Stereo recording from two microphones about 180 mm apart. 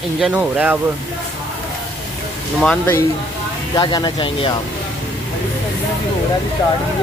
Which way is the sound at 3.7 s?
20° left (ahead or behind).